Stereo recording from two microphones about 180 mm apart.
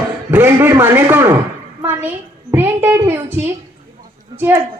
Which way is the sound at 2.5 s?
10° right (ahead or behind).